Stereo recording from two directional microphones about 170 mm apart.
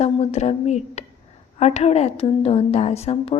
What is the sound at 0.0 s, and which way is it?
A woman's voice, 40° left (ahead or behind).